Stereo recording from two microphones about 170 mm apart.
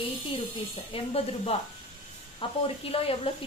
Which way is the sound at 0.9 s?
35° left (ahead or behind).